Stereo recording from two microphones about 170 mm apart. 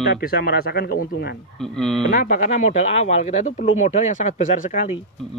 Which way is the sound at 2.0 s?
50° left (ahead or behind).